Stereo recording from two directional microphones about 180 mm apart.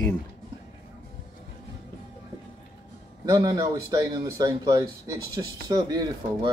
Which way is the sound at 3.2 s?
15° right (ahead or behind).